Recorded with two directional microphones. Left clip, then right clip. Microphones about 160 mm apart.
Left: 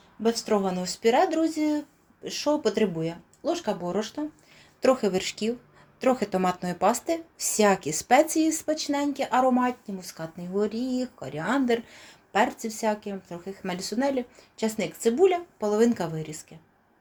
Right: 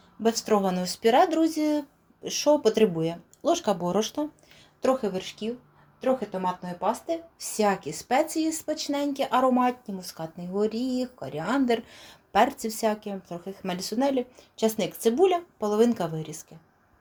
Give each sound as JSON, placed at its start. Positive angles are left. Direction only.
{"t": 0.2, "sound": "speech", "side_deg": -15}
{"t": 4.8, "sound": "a woman's voice", "side_deg": 20}
{"t": 5.1, "sound": "speech", "side_deg": 35}
{"t": 6.0, "sound": "speech", "side_deg": 50}
{"t": 7.3, "sound": "speech", "side_deg": 25}